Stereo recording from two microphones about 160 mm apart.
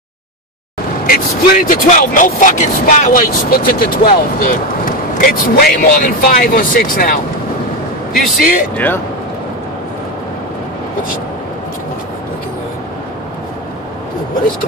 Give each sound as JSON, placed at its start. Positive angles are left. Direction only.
{"t": 1.0, "sound": "speech", "side_deg": 65}
{"t": 1.9, "sound": "speech", "side_deg": 55}
{"t": 8.1, "sound": "speech", "side_deg": 60}
{"t": 8.7, "sound": "speech", "side_deg": 10}